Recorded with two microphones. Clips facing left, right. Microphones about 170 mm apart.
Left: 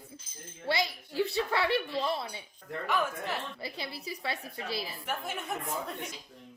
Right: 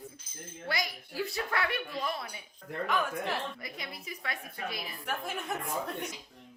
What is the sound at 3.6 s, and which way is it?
A woman's voice, 30° left (ahead or behind).